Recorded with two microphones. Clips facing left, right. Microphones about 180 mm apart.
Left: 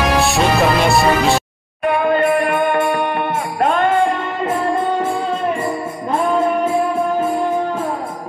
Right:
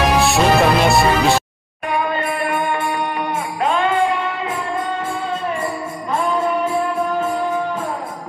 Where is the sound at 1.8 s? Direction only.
60° left (ahead or behind).